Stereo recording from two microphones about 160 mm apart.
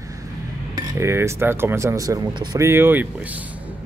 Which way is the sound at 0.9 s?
15° right (ahead or behind).